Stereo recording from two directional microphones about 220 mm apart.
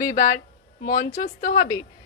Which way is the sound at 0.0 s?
35° left (ahead or behind).